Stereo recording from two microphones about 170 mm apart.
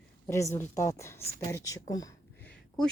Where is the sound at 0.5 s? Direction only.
15° left (ahead or behind).